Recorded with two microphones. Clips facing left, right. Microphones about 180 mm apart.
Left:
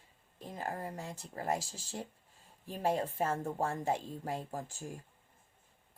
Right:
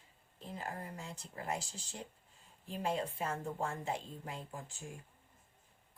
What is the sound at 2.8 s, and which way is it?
A woman's voice, 45° left (ahead or behind).